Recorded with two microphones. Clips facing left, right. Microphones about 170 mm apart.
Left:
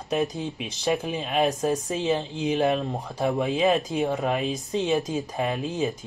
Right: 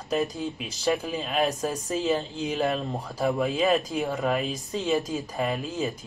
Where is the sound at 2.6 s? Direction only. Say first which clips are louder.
Left 1 dB; 15° left (ahead or behind).